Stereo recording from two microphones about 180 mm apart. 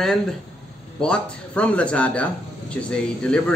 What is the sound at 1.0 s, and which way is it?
Speech, 5° left (ahead or behind).